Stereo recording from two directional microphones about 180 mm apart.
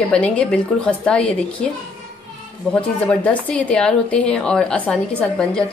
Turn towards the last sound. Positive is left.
turn(degrees=5)  # may be behind; listen again after turning